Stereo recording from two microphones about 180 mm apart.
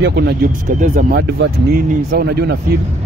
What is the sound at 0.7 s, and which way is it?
Speech, 45° right (ahead or behind).